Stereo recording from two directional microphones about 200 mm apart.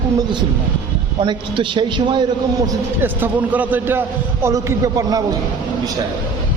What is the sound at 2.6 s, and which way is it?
A man's voice, 10° right (ahead or behind).